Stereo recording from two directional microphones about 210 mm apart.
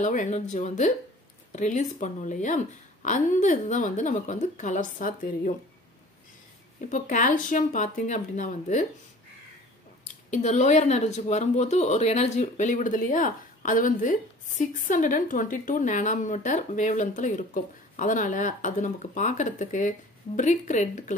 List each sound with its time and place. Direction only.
0.0 s speech: 35° left (ahead or behind)
6.9 s speech: 35° left (ahead or behind)
10.3 s speech: 35° left (ahead or behind)